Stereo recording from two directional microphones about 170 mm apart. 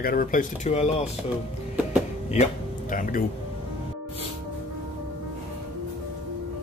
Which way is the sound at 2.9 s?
50° left (ahead or behind).